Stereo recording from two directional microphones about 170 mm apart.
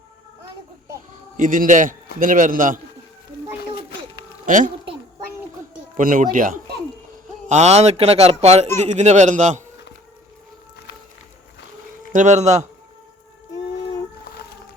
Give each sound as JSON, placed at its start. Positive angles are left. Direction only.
{"t": 1.4, "sound": "a man's voice", "side_deg": -50}
{"t": 4.4, "sound": "a woman's voice", "side_deg": -50}
{"t": 6.0, "sound": "a man's voice", "side_deg": -50}
{"t": 7.4, "sound": "a man's voice", "side_deg": -40}
{"t": 12.1, "sound": "a man's voice", "side_deg": -45}
{"t": 14.3, "sound": "music", "side_deg": 65}